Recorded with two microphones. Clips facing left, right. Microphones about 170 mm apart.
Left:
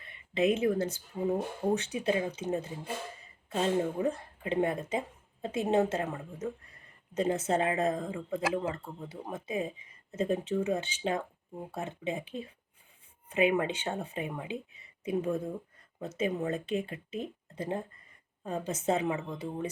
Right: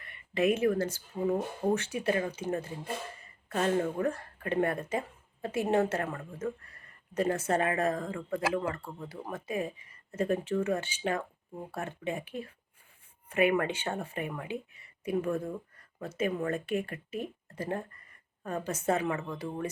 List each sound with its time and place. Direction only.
0.4 s speech: 20° left (ahead or behind)